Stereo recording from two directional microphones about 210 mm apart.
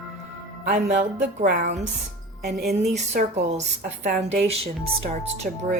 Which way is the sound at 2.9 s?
30° right (ahead or behind).